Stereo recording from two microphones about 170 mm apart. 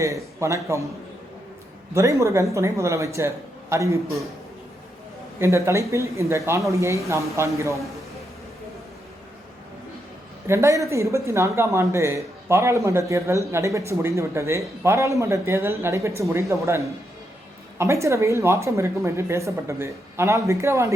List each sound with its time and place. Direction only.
0.0 s speech: 15° right (ahead or behind)
1.9 s speech: 15° right (ahead or behind)
5.4 s speech: 15° right (ahead or behind)
10.4 s speech: 15° right (ahead or behind)